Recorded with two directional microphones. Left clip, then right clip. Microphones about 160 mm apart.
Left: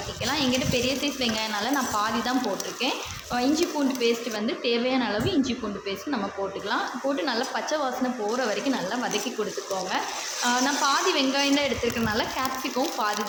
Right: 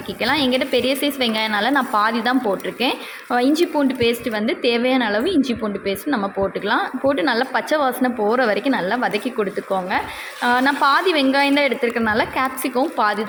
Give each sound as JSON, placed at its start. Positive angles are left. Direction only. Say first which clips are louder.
{"t": 0.2, "sound": "a woman's voice", "louder": "right 8 dB", "side_deg": -50}
{"t": 3.3, "sound": "a woman's voice", "louder": "right 7 dB", "side_deg": -45}
{"t": 10.4, "sound": "a woman's voice", "louder": "right 8 dB", "side_deg": -45}